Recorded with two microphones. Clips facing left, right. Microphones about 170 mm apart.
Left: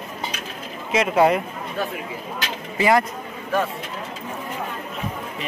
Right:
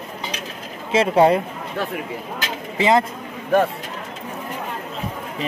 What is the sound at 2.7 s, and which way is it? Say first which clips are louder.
Speech: right 1 dB; 20° right (ahead or behind).